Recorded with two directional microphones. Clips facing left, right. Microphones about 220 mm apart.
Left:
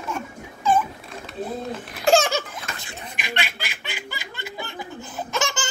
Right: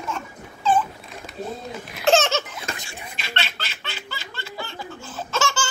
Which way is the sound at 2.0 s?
10° left (ahead or behind).